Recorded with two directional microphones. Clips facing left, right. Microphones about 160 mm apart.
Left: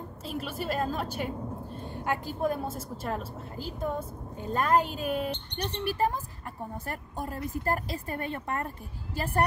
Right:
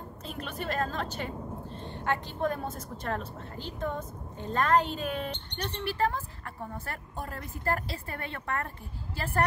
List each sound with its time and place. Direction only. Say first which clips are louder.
0.2 s a woman's voice: left 3 dB; 5° left (ahead or behind)